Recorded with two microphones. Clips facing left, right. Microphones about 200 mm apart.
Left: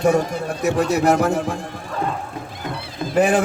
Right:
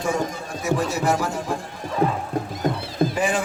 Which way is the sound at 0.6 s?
65° left (ahead or behind).